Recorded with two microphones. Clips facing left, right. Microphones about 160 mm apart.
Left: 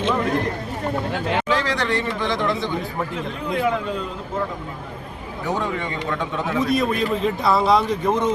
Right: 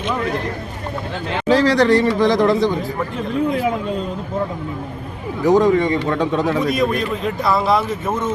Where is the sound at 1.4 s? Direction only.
35° right (ahead or behind).